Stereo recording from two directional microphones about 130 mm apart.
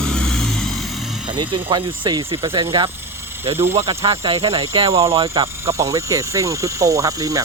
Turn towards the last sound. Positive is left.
turn(degrees=-25)  # may be behind; listen again after turning